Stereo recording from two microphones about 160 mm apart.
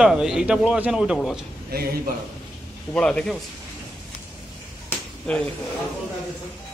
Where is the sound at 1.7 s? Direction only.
70° right (ahead or behind).